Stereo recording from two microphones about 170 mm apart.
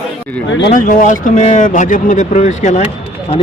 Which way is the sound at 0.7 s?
50° left (ahead or behind).